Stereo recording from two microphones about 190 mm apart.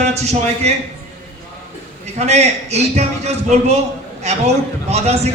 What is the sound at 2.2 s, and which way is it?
A man's voice, 35° right (ahead or behind).